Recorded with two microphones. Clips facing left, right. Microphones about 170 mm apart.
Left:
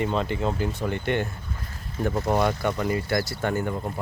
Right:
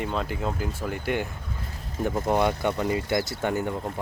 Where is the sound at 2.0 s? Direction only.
15° right (ahead or behind).